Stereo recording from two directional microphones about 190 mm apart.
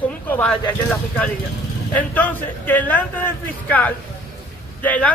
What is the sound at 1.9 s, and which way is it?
A man's voice, 10° left (ahead or behind).